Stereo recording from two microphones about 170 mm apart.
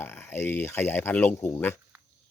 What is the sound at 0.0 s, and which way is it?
A man's voice, 15° left (ahead or behind).